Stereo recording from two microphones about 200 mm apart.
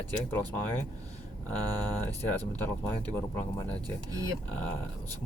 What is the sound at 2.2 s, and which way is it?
Speech, 10° left (ahead or behind).